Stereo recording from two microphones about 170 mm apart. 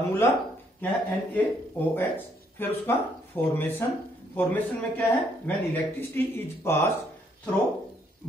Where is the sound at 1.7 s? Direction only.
10° left (ahead or behind).